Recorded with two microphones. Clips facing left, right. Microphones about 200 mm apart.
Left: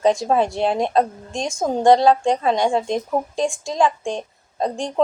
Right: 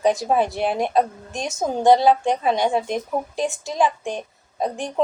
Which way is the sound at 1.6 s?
5° right (ahead or behind).